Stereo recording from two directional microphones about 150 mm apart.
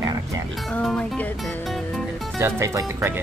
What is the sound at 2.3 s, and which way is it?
Speech, 20° right (ahead or behind).